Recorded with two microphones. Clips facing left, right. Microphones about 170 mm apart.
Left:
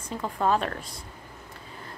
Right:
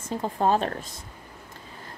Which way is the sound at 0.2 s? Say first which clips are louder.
Right 2 dB; 30° right (ahead or behind).